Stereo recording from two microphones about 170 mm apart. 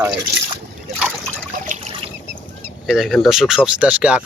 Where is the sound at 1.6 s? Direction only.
45° right (ahead or behind).